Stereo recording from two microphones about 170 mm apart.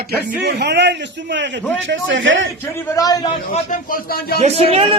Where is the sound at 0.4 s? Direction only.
85° right.